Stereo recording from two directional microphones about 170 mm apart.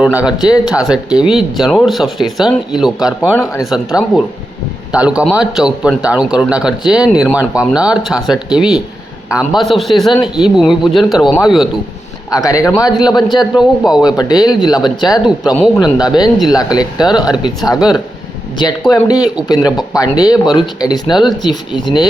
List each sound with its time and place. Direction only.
0.0 s a man's voice: 5° right (ahead or behind)
12.3 s speech: 20° left (ahead or behind)
13.6 s a man's voice: 5° right (ahead or behind)
14.0 s speech: 25° left (ahead or behind)
17.7 s a man's voice: 5° right (ahead or behind)
18.9 s speech: 20° left (ahead or behind)